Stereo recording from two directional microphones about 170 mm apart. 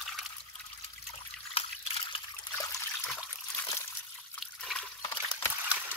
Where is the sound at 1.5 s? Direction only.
35° left (ahead or behind).